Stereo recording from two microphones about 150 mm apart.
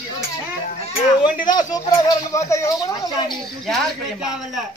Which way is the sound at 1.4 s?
25° left (ahead or behind).